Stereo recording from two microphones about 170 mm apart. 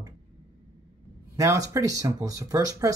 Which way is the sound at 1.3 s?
20° right (ahead or behind).